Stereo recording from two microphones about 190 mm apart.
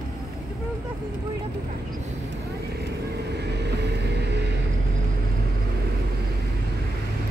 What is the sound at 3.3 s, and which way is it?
Vehicle, 60° right (ahead or behind).